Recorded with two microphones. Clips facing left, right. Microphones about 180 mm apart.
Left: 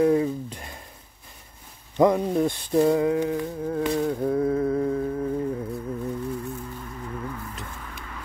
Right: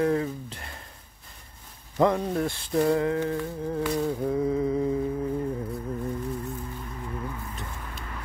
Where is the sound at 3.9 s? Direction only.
Centre (ahead or behind).